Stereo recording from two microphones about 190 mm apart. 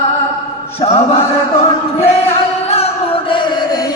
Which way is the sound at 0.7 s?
35° left (ahead or behind).